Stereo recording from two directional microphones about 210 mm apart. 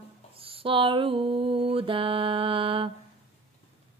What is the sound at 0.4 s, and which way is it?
Mantra, 25° right (ahead or behind).